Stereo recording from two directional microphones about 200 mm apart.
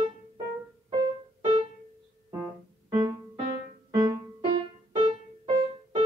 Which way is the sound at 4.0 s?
20° right (ahead or behind).